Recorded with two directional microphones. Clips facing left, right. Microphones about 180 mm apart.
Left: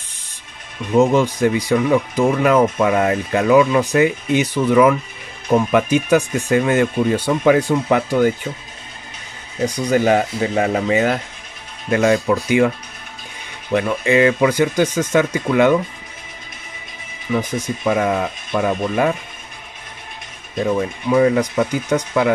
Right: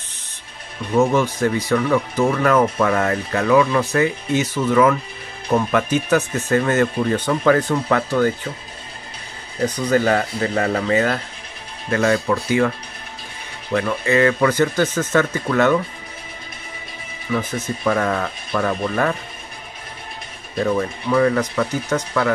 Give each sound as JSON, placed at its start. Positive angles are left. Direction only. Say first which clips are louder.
{"t": 0.9, "sound": "speech", "louder": "left 3 dB", "side_deg": 15}
{"t": 9.6, "sound": "speech", "louder": "left 1 dB", "side_deg": 10}
{"t": 13.7, "sound": "speech", "louder": "left 2 dB", "side_deg": 15}
{"t": 17.3, "sound": "speech", "louder": "left 2 dB", "side_deg": 10}
{"t": 20.5, "sound": "speech", "louder": "left 1 dB", "side_deg": 15}